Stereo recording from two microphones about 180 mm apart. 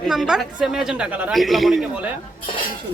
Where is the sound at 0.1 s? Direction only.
Centre (ahead or behind).